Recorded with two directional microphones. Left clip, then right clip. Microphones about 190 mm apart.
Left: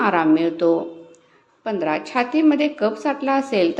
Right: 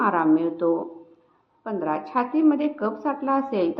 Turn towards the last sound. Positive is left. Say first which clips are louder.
# left 4 dB
turn(degrees=20)  # may be behind; listen again after turning